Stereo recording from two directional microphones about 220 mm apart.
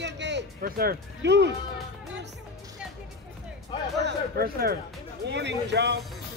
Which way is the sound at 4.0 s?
45° right (ahead or behind).